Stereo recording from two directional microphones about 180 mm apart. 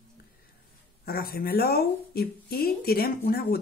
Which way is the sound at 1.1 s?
55° left (ahead or behind).